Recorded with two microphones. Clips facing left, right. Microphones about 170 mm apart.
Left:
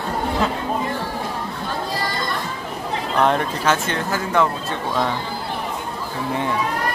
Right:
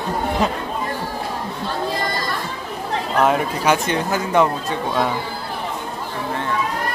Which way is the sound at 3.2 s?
5° right (ahead or behind).